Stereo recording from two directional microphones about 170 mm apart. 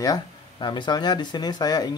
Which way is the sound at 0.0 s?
25° left (ahead or behind).